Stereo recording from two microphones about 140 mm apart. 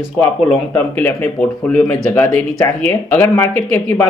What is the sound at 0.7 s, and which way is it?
Speech, 15° left (ahead or behind).